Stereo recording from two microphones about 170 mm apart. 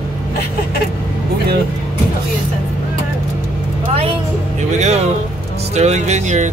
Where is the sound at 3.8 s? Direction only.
35° right (ahead or behind).